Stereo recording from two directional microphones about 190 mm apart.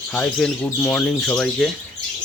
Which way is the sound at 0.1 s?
5° left (ahead or behind).